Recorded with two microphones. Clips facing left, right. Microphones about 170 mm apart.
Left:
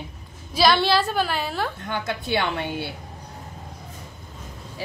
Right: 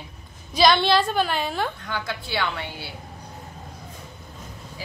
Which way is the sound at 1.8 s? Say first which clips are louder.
Left 3 dB; 20° left (ahead or behind).